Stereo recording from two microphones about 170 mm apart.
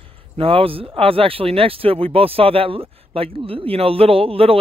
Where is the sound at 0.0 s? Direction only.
35° right (ahead or behind).